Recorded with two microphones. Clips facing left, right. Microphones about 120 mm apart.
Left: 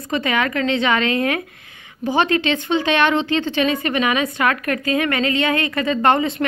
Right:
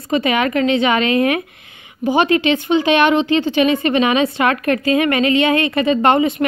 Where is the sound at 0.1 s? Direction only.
20° right (ahead or behind).